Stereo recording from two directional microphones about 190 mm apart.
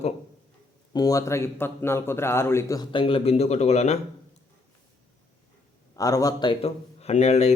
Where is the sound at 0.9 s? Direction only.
20° left (ahead or behind); by 3.9 s 35° left (ahead or behind).